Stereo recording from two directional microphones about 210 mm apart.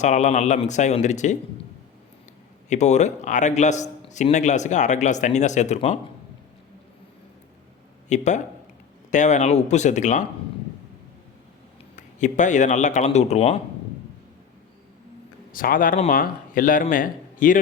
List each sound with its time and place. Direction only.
0.0 s a man's voice: 35° left (ahead or behind)
2.6 s a man's voice: 35° left (ahead or behind)
8.1 s a man's voice: 35° left (ahead or behind)
11.9 s a man's voice: 35° left (ahead or behind)
15.5 s a man's voice: 40° left (ahead or behind)